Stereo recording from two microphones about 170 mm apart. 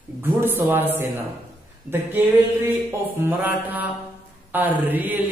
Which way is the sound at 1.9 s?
10° right (ahead or behind).